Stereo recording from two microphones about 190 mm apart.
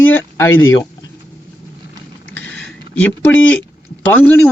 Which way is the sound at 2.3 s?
85° left.